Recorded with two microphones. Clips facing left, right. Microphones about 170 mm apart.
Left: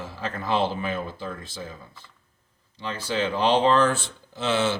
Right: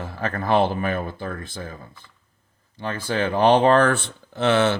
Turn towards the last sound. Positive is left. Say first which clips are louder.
# right 5 dB
turn(degrees=-60)  # may be behind; listen again after turning